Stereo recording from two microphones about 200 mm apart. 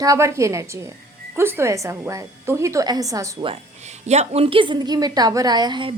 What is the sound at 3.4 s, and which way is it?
A woman's voice, 35° right (ahead or behind).